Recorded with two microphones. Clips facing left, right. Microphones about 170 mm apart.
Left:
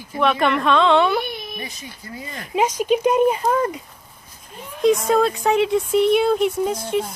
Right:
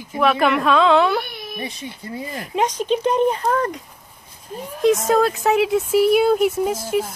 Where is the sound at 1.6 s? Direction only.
30° right (ahead or behind).